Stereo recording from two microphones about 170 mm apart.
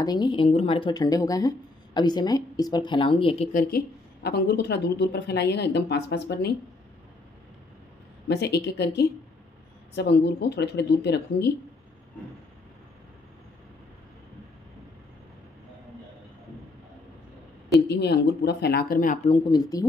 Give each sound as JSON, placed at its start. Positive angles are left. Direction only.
{"t": 0.0, "sound": "speech", "side_deg": 25}
{"t": 3.5, "sound": "a woman's voice", "side_deg": 70}
{"t": 8.3, "sound": "a woman's voice", "side_deg": 75}
{"t": 17.7, "sound": "speech", "side_deg": 75}
{"t": 19.2, "sound": "speech", "side_deg": 25}